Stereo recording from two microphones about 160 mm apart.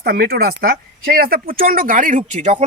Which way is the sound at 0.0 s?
70° right (ahead or behind).